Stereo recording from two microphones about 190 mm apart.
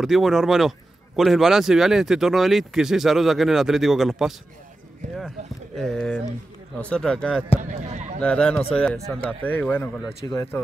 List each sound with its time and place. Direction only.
0.0 s speech: centre (ahead or behind)
5.0 s speech: 35° right (ahead or behind)
5.8 s speech: 5° left (ahead or behind)
7.6 s speech: 40° right (ahead or behind)
8.2 s speech: 5° left (ahead or behind)